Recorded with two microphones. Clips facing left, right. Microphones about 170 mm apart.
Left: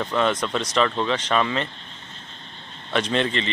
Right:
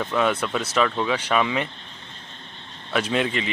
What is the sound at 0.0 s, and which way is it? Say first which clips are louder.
Speech: even; 5° right (ahead or behind).